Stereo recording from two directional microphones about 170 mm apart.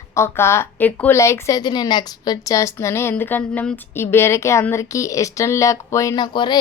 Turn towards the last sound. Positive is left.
turn(degrees=25)  # may be behind; listen again after turning